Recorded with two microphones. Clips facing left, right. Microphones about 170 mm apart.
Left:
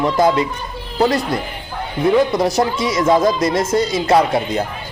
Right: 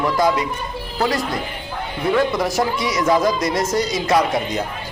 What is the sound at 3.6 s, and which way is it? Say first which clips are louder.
Speech: left 2 dB; 55° left (ahead or behind).